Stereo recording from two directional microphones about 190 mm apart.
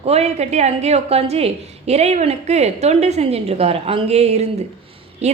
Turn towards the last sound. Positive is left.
turn(degrees=-35)  # may be behind; listen again after turning